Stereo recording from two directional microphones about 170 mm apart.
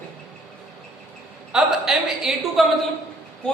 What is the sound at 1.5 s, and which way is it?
A man's voice, centre (ahead or behind).